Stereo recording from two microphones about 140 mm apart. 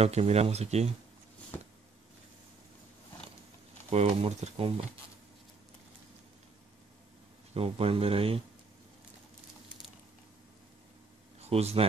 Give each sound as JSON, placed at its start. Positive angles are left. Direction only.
{"t": 0.0, "sound": "speech", "side_deg": -50}
{"t": 3.9, "sound": "speech", "side_deg": -50}
{"t": 7.5, "sound": "speech", "side_deg": -45}
{"t": 11.4, "sound": "speech", "side_deg": -50}